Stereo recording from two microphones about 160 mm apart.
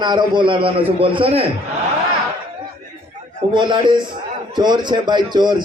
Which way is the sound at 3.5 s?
30° right (ahead or behind).